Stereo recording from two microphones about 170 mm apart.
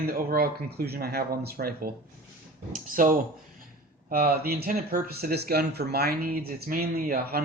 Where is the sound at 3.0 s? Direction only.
50° right (ahead or behind).